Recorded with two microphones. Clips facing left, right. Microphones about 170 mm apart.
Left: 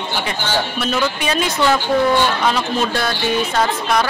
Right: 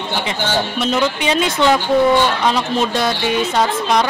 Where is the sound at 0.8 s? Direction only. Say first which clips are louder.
Right 2 dB; 20° right (ahead or behind).